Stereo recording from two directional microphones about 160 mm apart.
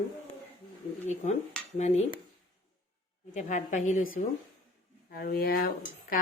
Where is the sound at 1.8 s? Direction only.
45° left (ahead or behind).